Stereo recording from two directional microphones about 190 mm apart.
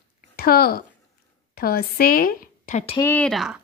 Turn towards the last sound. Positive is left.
turn(degrees=0)  # may be behind; listen again after turning